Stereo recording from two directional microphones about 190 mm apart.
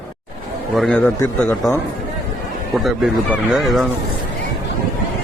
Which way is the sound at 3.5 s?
Centre (ahead or behind).